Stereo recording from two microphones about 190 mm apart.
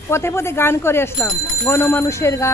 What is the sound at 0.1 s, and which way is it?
Speech, 15° left (ahead or behind).